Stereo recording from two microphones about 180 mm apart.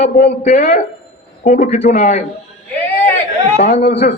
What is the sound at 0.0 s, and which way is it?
Speech, 40° left (ahead or behind).